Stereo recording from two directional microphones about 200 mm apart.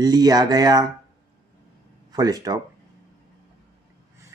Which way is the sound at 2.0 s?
20° right (ahead or behind).